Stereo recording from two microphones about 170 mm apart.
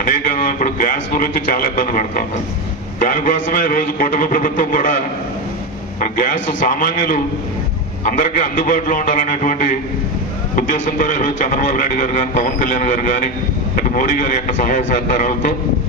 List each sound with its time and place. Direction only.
0.0 s a man's voice: 55° left (ahead or behind)
6.8 s a man's voice: 55° left (ahead or behind)